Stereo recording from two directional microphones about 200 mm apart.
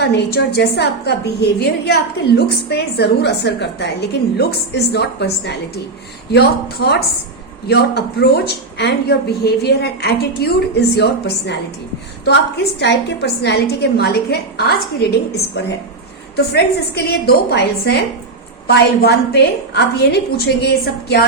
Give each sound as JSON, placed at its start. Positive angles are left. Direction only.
{"t": 0.0, "sound": "a woman's voice", "side_deg": 55}
{"t": 12.8, "sound": "a woman's voice", "side_deg": 55}